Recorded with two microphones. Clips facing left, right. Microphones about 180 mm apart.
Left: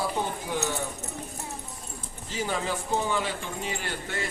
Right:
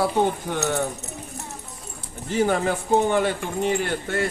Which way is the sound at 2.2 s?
55° right (ahead or behind).